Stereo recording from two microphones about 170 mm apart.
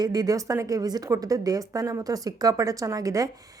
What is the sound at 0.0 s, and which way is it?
Speech, 20° right (ahead or behind).